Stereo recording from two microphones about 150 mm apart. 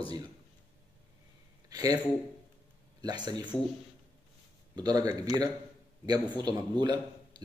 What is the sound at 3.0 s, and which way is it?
Speech, 30° right (ahead or behind).